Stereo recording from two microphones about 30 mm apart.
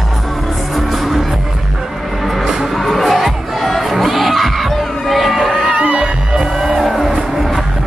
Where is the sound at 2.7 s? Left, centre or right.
Centre.